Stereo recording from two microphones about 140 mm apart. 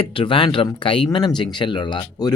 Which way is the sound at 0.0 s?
40° left (ahead or behind).